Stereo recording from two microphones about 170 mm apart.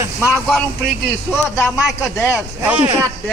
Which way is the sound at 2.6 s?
10° right (ahead or behind).